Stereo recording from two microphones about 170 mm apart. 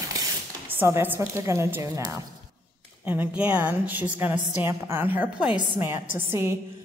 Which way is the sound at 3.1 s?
10° right (ahead or behind).